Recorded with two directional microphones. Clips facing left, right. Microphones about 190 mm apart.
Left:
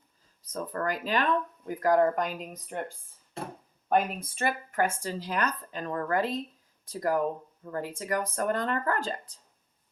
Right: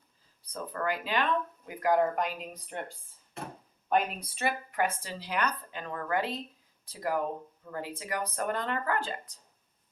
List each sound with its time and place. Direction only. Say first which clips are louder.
0.4 s speech: left 2 dB; 45° left (ahead or behind)
3.8 s speech: left 2 dB; 45° left (ahead or behind)